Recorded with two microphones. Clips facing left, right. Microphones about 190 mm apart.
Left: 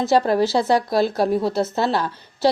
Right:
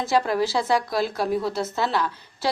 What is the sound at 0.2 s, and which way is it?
A woman's voice, 30° left (ahead or behind).